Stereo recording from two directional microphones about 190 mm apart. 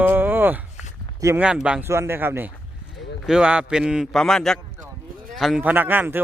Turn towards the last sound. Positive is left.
turn(degrees=-10)  # may be behind; listen again after turning